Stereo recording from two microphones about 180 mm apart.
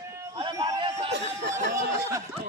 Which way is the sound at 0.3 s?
30° right (ahead or behind).